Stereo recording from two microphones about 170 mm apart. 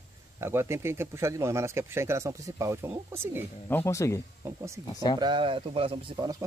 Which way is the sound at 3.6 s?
15° left (ahead or behind).